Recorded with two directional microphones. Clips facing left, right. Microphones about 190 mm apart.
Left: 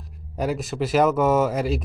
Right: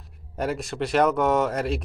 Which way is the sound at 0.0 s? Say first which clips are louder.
Left 2 dB; centre (ahead or behind).